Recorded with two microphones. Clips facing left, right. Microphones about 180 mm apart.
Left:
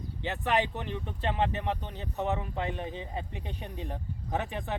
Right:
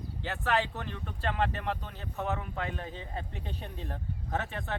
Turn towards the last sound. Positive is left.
turn(degrees=15)  # may be behind; listen again after turning